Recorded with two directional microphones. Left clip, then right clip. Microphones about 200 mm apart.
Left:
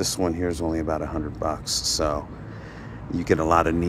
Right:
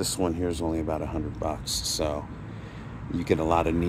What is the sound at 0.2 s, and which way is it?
A man's voice, 5° left (ahead or behind).